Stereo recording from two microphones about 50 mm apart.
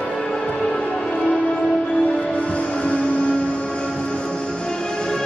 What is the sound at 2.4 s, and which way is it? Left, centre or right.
Music, left.